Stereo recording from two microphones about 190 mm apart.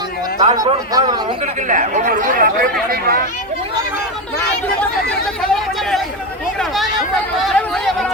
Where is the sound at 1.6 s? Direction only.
40° right (ahead or behind).